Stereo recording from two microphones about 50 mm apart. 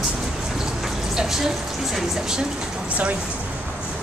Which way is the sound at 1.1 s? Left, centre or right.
Centre.